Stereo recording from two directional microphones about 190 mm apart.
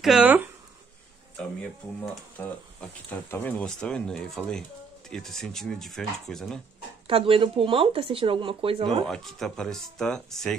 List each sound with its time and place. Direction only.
0.0 s speech: 5° right (ahead or behind)
2.4 s speech: 10° left (ahead or behind)
7.1 s speech: 30° right (ahead or behind)
9.0 s speech: centre (ahead or behind)